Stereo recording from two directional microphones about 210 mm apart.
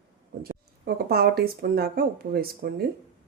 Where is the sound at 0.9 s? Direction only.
50° right (ahead or behind).